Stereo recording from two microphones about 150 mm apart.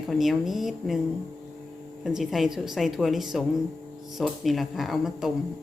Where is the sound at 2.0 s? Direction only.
Centre (ahead or behind).